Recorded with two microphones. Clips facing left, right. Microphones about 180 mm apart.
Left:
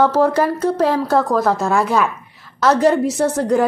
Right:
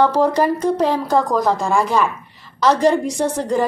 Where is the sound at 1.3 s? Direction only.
15° right (ahead or behind).